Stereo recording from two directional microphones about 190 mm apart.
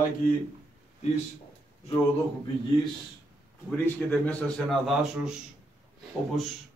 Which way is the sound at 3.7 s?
10° left (ahead or behind).